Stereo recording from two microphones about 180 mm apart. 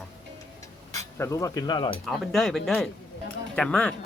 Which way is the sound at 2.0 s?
Centre (ahead or behind).